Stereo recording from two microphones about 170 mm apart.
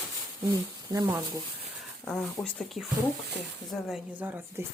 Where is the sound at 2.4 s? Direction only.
20° left (ahead or behind).